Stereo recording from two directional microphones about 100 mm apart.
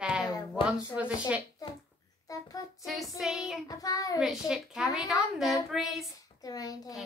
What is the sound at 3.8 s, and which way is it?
Speech, 40° left (ahead or behind).